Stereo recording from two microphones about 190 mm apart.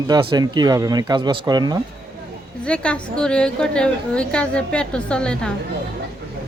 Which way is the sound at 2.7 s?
5° left (ahead or behind).